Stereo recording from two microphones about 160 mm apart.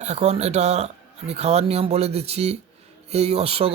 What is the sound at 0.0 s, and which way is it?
A man's voice, 45° right (ahead or behind).